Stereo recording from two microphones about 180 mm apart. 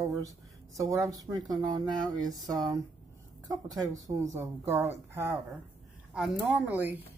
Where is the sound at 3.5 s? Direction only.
20° right (ahead or behind).